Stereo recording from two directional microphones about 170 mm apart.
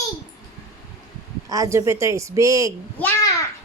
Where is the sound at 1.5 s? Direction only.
20° right (ahead or behind).